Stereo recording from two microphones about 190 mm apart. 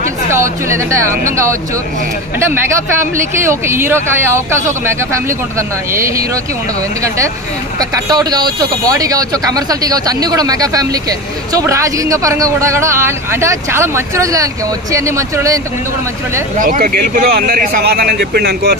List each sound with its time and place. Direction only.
0.3 s speech: 15° right (ahead or behind)
3.2 s speech: 15° right (ahead or behind)
5.6 s speech: 15° right (ahead or behind)
8.1 s speech: 20° right (ahead or behind)
16.5 s speech: 45° right (ahead or behind)